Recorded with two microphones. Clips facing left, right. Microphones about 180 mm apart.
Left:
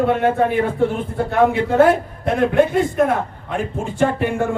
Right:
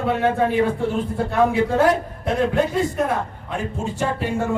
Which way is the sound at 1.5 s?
60° left (ahead or behind).